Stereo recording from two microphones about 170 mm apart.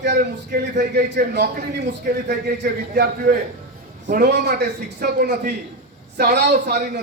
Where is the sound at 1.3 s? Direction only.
70° right (ahead or behind).